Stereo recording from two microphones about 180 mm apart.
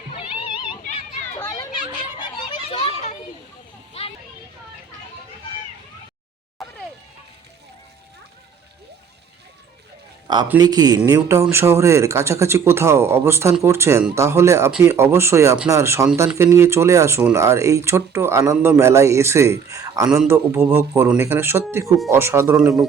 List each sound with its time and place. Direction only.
0.1 s a sound: 30° left (ahead or behind)
2.1 s children playing: 30° left (ahead or behind)
10.6 s speech: 20° right (ahead or behind)
22.5 s speech: centre (ahead or behind)